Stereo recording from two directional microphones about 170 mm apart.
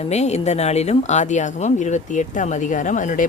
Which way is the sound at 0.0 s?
40° left (ahead or behind).